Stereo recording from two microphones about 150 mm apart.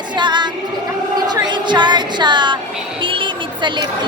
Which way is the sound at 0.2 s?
30° right (ahead or behind).